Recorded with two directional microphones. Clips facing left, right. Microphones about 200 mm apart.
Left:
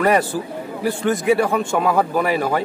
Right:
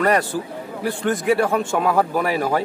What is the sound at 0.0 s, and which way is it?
A man's voice, 5° left (ahead or behind).